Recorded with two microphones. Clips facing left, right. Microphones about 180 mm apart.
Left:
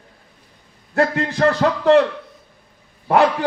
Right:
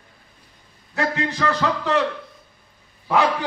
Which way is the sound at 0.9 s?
50° left (ahead or behind).